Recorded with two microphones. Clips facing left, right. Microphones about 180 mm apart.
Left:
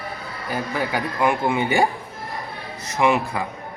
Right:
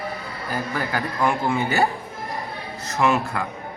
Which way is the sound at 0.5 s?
10° left (ahead or behind).